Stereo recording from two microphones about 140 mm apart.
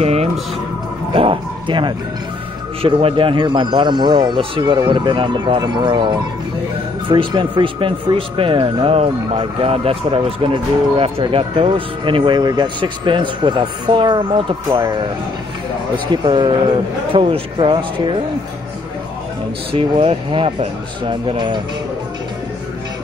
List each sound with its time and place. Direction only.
0.0 s music: 50° right (ahead or behind)
1.1 s bow-wow: 40° right (ahead or behind)
2.8 s speech: 45° right (ahead or behind)
16.1 s speech: 35° right (ahead or behind)
19.7 s speech: 35° right (ahead or behind)